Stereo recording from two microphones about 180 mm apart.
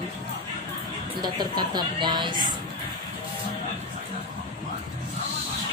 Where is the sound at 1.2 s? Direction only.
25° right (ahead or behind).